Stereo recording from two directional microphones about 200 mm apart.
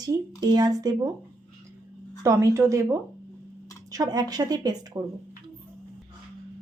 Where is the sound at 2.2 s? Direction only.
15° right (ahead or behind).